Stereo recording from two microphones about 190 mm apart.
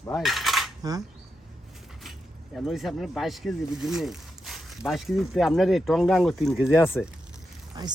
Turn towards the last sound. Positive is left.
turn(degrees=-20)  # may be behind; listen again after turning